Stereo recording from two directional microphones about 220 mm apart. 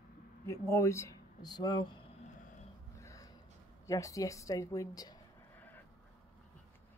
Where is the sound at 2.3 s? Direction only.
35° left (ahead or behind).